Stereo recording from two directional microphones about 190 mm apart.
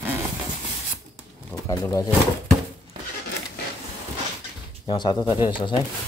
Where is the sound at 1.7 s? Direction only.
20° left (ahead or behind).